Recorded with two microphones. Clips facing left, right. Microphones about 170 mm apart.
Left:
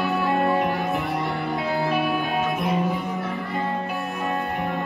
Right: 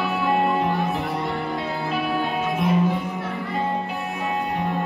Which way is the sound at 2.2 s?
20° right (ahead or behind).